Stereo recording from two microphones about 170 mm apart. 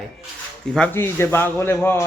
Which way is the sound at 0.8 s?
15° left (ahead or behind).